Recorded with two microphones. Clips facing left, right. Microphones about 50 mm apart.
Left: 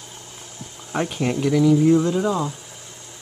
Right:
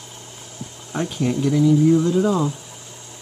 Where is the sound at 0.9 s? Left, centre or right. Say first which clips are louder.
Even; left.